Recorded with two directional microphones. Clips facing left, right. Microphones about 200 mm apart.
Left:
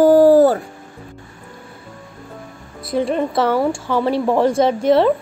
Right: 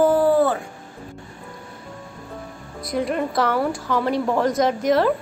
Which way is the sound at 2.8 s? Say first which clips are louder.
Left 4 dB; 30° left (ahead or behind).